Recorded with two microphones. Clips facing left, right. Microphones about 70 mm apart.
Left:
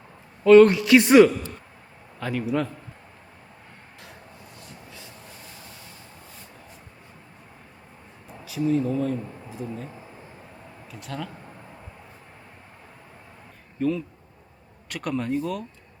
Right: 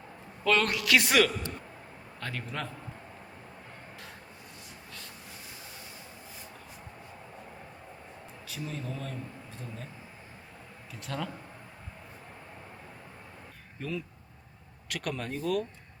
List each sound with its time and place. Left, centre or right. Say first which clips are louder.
0.4 s a man's voice: left 14 dB; left
2.2 s a man's voice: left 11 dB; centre
8.4 s speech: left 15 dB; centre
11.0 s speech: left 2 dB; centre
13.7 s speech: left 11 dB; centre